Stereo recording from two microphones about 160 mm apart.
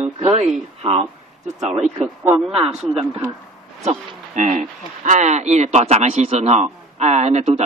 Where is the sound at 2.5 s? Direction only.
40° right (ahead or behind).